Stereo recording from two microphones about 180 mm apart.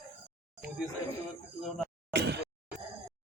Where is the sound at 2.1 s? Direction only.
70° right (ahead or behind).